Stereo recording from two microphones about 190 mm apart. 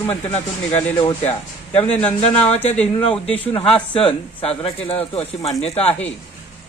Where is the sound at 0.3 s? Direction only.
35° left (ahead or behind).